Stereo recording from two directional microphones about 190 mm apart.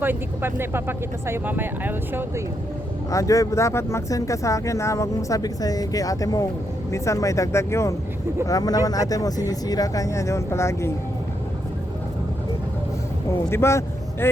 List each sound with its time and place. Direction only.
0.0 s speech: 10° right (ahead or behind)
3.1 s speech: 15° left (ahead or behind)
13.4 s vehicle: 15° left (ahead or behind)